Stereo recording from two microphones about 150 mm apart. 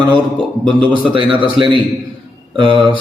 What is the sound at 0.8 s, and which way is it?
A man's voice, 35° right (ahead or behind).